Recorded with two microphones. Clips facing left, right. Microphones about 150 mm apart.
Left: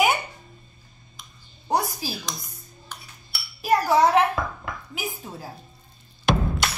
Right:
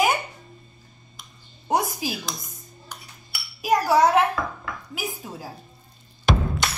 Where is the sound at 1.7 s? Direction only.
20° right (ahead or behind).